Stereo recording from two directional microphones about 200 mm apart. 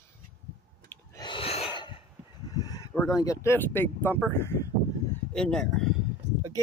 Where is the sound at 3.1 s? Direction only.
15° left (ahead or behind).